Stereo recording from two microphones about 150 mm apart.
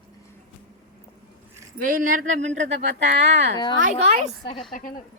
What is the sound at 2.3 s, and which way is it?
Speech, 50° right (ahead or behind).